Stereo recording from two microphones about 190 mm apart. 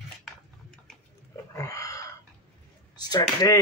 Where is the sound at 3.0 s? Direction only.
20° left (ahead or behind).